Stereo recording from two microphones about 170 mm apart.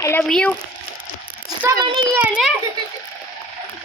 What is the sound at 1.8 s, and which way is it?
Speech, 25° right (ahead or behind).